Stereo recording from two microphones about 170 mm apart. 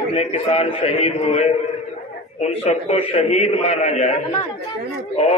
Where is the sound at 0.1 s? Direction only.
40° left (ahead or behind).